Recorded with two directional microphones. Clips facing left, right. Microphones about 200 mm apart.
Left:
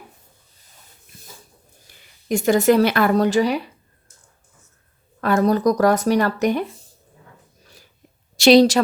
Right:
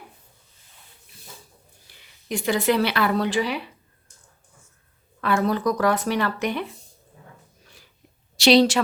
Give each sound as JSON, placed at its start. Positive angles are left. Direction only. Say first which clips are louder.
{"t": 1.9, "sound": "speech", "louder": "left 7 dB", "side_deg": 45}
{"t": 5.2, "sound": "speech", "louder": "left 5 dB", "side_deg": 40}
{"t": 8.4, "sound": "a woman's voice", "louder": "left 4 dB", "side_deg": 45}